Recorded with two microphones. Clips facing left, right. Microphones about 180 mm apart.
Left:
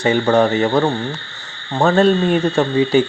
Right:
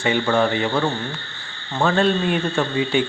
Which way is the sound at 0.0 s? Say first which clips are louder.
Left 5 dB; 40° left (ahead or behind).